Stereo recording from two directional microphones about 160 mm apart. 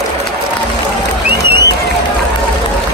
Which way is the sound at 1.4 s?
90° right.